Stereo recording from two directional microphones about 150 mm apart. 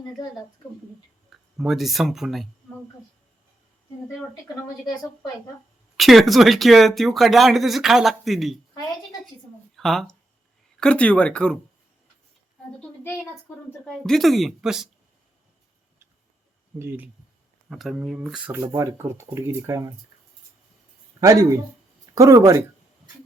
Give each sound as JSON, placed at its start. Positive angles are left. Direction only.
{"t": 1.5, "sound": "speech", "side_deg": 0}
{"t": 6.0, "sound": "speech", "side_deg": 0}
{"t": 9.7, "sound": "speech", "side_deg": 0}
{"t": 13.8, "sound": "speech", "side_deg": 5}
{"t": 16.7, "sound": "speech", "side_deg": -15}
{"t": 17.7, "sound": "speech", "side_deg": 0}
{"t": 18.7, "sound": "speech", "side_deg": -20}
{"t": 21.2, "sound": "speech", "side_deg": -20}